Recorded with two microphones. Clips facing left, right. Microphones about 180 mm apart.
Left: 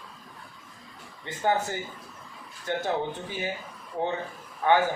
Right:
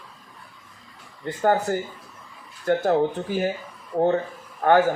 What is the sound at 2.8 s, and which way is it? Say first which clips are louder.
Speech: right 8 dB; 50° right (ahead or behind).